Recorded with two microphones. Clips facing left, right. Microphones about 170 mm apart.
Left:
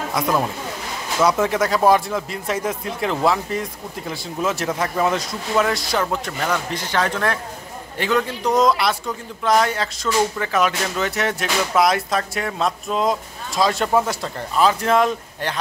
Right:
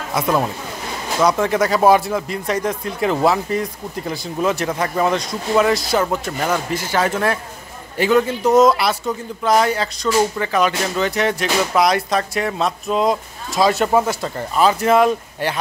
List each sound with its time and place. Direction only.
0.1 s a man's voice: 5° right (ahead or behind)